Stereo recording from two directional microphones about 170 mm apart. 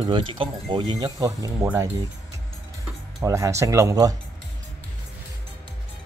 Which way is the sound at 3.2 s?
15° right (ahead or behind).